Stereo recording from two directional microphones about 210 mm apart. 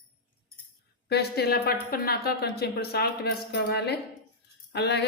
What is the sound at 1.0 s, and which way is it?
Speech, 50° left (ahead or behind).